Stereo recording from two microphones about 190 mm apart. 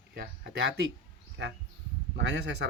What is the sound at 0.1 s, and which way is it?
Speech, 60° right (ahead or behind).